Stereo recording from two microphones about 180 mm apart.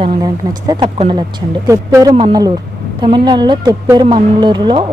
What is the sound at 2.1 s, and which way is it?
Speech, 30° right (ahead or behind).